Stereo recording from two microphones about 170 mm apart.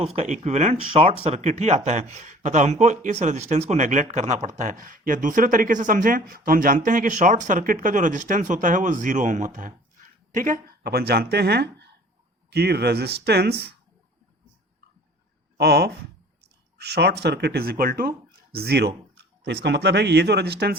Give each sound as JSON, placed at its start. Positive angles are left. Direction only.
{"t": 0.0, "sound": "speech", "side_deg": -35}
{"t": 15.5, "sound": "speech", "side_deg": -75}
{"t": 18.5, "sound": "speech", "side_deg": -70}
{"t": 19.1, "sound": "speech", "side_deg": -90}